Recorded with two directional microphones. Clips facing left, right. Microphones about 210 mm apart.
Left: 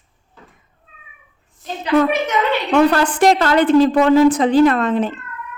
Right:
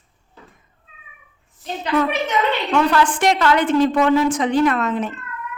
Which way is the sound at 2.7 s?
40° left (ahead or behind).